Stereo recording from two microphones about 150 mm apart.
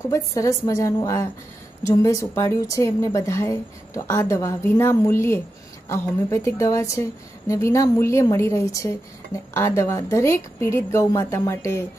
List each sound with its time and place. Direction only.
0.1 s a woman's voice: 20° left (ahead or behind)